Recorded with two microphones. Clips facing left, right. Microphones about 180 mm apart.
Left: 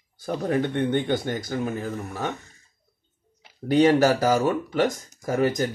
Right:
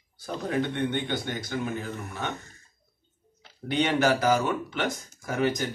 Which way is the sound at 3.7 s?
40° left (ahead or behind).